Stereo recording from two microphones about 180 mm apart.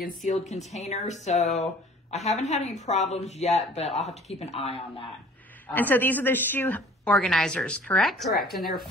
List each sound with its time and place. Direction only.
0.2 s speech: 40° left (ahead or behind)
5.7 s a woman's voice: 10° left (ahead or behind)